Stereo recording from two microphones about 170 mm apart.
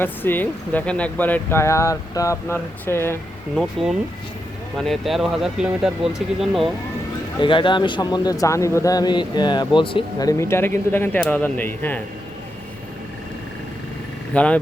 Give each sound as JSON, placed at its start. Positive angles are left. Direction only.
{"t": 0.0, "sound": "speech", "side_deg": 10}
{"t": 3.5, "sound": "speech", "side_deg": 0}
{"t": 7.3, "sound": "a man's voice", "side_deg": 30}
{"t": 14.3, "sound": "speech", "side_deg": 5}